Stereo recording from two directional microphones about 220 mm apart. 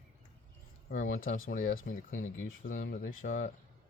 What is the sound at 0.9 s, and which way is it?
Speech, 40° left (ahead or behind).